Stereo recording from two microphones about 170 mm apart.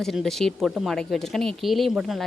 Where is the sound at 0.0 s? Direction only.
Centre (ahead or behind).